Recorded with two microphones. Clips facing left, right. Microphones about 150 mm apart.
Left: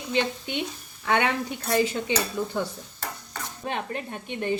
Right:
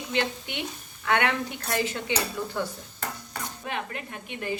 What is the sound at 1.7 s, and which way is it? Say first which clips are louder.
Dishes: left 4 dB; 15° left (ahead or behind).